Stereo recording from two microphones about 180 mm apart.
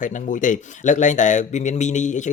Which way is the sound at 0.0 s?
45° left (ahead or behind).